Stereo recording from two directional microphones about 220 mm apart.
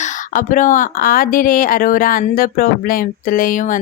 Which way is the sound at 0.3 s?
35° left (ahead or behind).